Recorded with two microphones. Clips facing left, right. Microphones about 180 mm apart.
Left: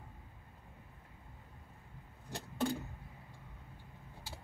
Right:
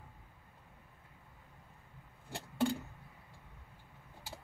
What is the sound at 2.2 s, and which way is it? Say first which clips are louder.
Vehicle: even; 30° right (ahead or behind).